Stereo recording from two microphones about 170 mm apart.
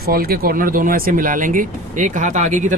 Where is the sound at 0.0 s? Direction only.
65° right (ahead or behind).